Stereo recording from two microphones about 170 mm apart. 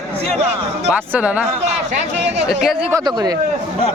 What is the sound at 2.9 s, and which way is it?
Speech, 20° right (ahead or behind).